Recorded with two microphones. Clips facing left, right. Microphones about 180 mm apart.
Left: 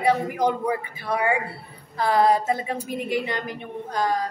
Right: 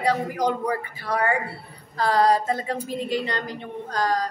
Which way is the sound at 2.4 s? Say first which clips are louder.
Even; 15° left (ahead or behind).